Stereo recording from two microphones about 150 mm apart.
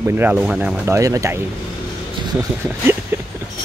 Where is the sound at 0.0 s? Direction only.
15° right (ahead or behind).